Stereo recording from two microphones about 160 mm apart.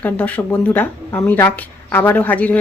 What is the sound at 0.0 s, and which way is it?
A woman's voice, 10° left (ahead or behind).